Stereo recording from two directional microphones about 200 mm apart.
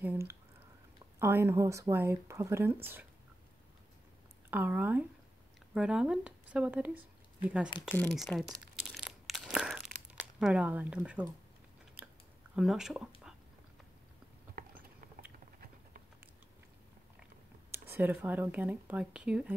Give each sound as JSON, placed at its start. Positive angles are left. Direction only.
{"t": 0.0, "sound": "speech", "side_deg": -10}
{"t": 4.5, "sound": "speech", "side_deg": -10}
{"t": 7.9, "sound": "crumpling", "side_deg": 5}
{"t": 12.5, "sound": "speech", "side_deg": 0}
{"t": 14.5, "sound": "clip-clop", "side_deg": -45}
{"t": 17.8, "sound": "speech", "side_deg": -10}